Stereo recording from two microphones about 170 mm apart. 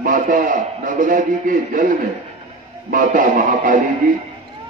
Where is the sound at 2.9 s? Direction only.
50° right (ahead or behind).